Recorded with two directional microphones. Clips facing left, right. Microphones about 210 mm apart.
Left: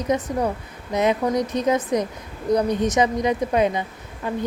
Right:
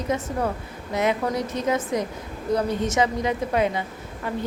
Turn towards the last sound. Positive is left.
turn(degrees=15)  # may be behind; listen again after turning